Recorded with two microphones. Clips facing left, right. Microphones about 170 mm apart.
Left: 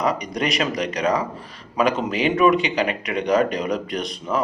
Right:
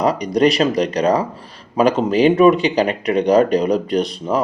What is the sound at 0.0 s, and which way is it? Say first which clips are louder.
Speech: right 8 dB; 35° right (ahead or behind).